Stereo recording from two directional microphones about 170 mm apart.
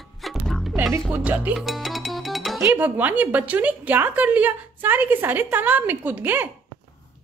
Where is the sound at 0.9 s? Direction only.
10° right (ahead or behind).